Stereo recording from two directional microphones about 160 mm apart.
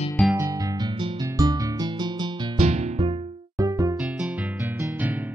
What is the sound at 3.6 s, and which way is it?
Music, 25° right (ahead or behind).